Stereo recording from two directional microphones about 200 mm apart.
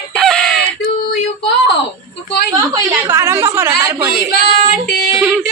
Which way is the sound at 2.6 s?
15° right (ahead or behind).